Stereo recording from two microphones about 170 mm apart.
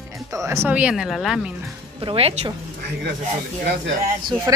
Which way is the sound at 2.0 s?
35° right (ahead or behind).